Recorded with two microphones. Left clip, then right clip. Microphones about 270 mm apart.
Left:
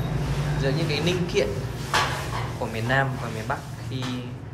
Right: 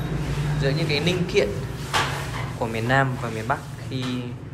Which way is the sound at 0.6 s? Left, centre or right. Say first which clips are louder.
Right 2 dB; centre.